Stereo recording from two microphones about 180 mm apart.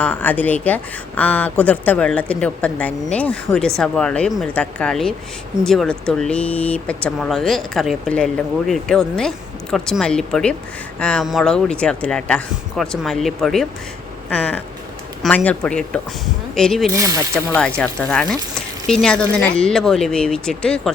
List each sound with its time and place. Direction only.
0.0 s speech: 10° left (ahead or behind)
16.9 s speech: 15° right (ahead or behind)
17.6 s speech: 5° left (ahead or behind)